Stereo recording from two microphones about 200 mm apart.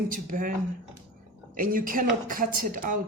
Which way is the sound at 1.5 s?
45° right (ahead or behind).